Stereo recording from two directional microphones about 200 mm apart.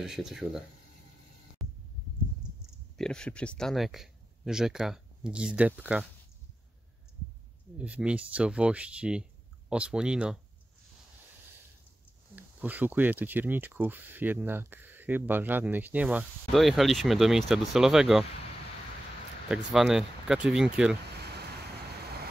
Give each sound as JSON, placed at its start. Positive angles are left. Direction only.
{"t": 0.0, "sound": "speech", "side_deg": 0}
{"t": 1.6, "sound": "heart sounds", "side_deg": 0}
{"t": 3.0, "sound": "speech", "side_deg": 5}
{"t": 7.7, "sound": "speech", "side_deg": -5}
{"t": 12.4, "sound": "speech", "side_deg": -10}
{"t": 19.5, "sound": "speech", "side_deg": 0}
{"t": 21.2, "sound": "vehicle", "side_deg": -55}